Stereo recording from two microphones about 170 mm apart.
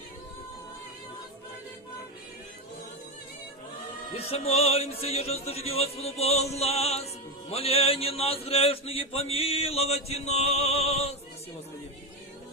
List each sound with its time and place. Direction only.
4.1 s a man's voice: 35° left (ahead or behind)